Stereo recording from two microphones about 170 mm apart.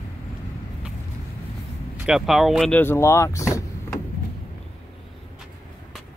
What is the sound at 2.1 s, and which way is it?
Speech, centre (ahead or behind).